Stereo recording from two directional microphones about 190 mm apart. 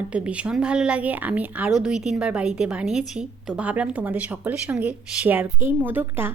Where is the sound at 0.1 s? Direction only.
5° right (ahead or behind).